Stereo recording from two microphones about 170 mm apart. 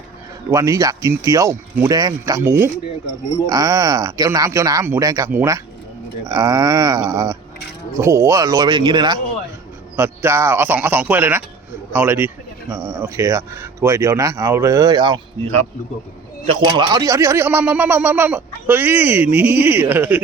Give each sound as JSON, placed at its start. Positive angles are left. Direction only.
{"t": 0.5, "sound": "speech", "side_deg": -20}
{"t": 9.9, "sound": "speech", "side_deg": -10}
{"t": 16.5, "sound": "speech", "side_deg": -25}